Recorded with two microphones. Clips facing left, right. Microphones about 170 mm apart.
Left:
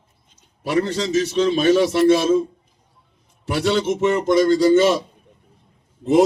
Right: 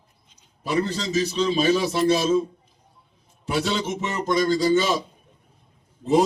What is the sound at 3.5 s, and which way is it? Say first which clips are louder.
Speech: left 6 dB; 60° left (ahead or behind).